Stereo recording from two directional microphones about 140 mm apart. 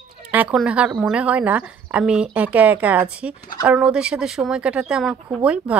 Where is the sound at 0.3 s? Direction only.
10° right (ahead or behind).